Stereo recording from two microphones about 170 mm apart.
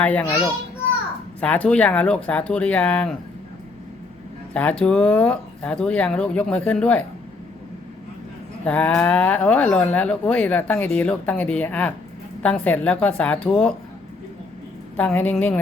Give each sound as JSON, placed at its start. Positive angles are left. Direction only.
{"t": 0.0, "sound": "speech", "side_deg": 10}
{"t": 1.4, "sound": "speech", "side_deg": 5}
{"t": 4.5, "sound": "speech", "side_deg": 5}
{"t": 8.6, "sound": "speech", "side_deg": 10}
{"t": 14.9, "sound": "speech", "side_deg": 10}